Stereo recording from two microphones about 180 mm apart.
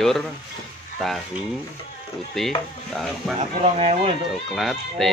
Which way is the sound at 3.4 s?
40° right (ahead or behind).